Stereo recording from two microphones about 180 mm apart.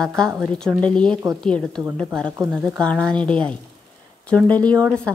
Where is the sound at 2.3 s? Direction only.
15° right (ahead or behind).